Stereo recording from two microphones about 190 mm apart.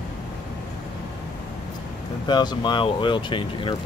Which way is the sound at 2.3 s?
25° left (ahead or behind).